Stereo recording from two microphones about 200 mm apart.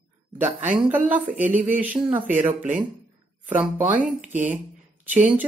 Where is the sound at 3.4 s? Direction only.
10° right (ahead or behind).